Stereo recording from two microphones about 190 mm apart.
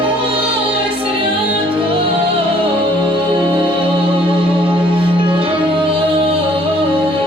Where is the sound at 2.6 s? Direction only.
25° right (ahead or behind).